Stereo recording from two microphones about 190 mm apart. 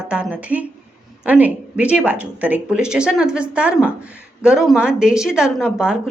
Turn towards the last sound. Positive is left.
turn(degrees=-5)  # may be behind; listen again after turning